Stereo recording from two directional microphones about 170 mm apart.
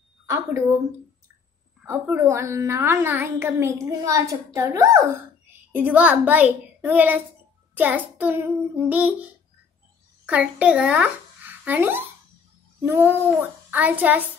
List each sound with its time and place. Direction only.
0.3 s a woman's voice: 15° right (ahead or behind)
1.8 s a woman's voice: 10° right (ahead or behind)
7.7 s child singing: 10° right (ahead or behind)
8.2 s a woman's voice: 10° right (ahead or behind)